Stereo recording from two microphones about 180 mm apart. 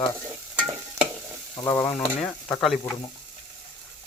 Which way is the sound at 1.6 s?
15° left (ahead or behind).